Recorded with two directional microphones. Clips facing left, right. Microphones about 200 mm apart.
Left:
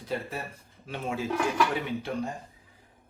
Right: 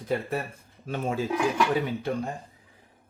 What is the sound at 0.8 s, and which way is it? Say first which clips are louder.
Speech: right 4 dB; 45° right (ahead or behind).